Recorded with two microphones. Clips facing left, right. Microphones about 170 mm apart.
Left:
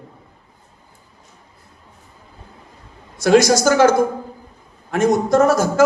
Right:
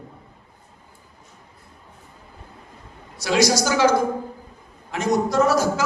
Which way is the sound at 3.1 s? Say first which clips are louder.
Left 6 dB; 50° left (ahead or behind).